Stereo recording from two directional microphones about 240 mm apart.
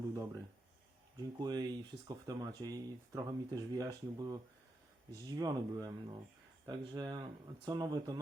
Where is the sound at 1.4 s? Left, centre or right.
Centre.